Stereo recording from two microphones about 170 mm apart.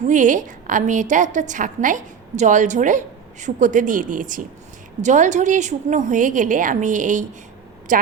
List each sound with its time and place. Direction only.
0.1 s a woman's voice: 50° right (ahead or behind)